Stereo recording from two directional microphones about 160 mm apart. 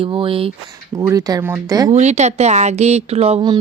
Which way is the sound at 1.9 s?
45° right (ahead or behind).